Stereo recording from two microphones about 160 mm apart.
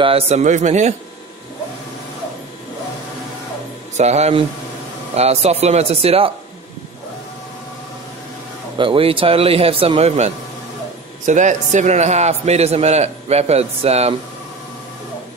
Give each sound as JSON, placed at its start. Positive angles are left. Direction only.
{"t": 0.0, "sound": "a man's voice", "side_deg": -40}
{"t": 3.9, "sound": "speech", "side_deg": -45}
{"t": 8.7, "sound": "a man's voice", "side_deg": -35}